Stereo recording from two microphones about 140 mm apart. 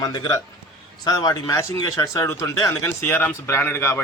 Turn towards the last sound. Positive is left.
turn(degrees=20)  # may be behind; listen again after turning